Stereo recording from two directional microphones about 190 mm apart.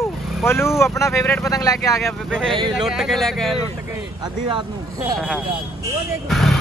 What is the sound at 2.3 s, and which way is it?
A man's voice, 5° left (ahead or behind).